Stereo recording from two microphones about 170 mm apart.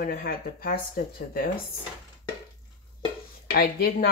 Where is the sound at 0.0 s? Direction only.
60° left (ahead or behind).